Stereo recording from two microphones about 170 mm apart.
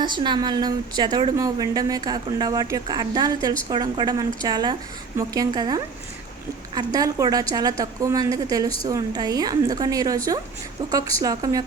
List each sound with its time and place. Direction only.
0.0 s a woman's voice: 25° right (ahead or behind)